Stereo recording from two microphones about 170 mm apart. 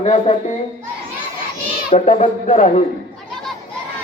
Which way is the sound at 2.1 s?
45° left (ahead or behind).